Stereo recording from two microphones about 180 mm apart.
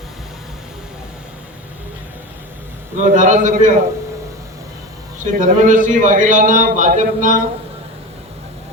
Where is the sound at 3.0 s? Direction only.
45° right (ahead or behind).